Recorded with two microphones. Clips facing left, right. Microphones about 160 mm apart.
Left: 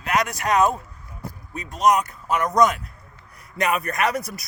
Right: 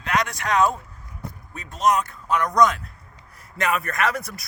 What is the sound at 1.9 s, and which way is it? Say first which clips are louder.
A man's voice: left 1 dB; 15° left (ahead or behind).